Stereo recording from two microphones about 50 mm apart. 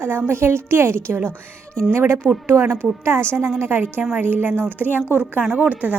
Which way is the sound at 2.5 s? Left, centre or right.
Right.